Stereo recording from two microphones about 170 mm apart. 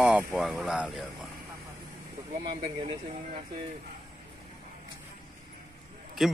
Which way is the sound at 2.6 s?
35° right (ahead or behind).